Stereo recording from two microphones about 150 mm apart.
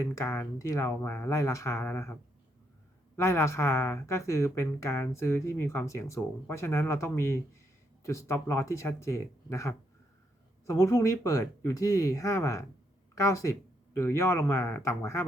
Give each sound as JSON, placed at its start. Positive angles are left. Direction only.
{"t": 0.0, "sound": "speech", "side_deg": 20}
{"t": 3.2, "sound": "speech", "side_deg": 15}